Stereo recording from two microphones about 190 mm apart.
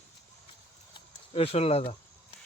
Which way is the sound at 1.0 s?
30° left (ahead or behind).